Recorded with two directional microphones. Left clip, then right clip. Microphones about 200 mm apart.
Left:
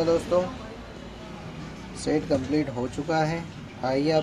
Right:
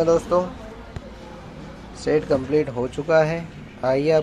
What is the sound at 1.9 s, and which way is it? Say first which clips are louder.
Speech: right 5 dB; 15° right (ahead or behind).